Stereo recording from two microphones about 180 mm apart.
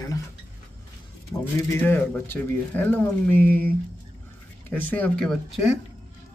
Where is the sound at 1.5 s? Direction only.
10° left (ahead or behind).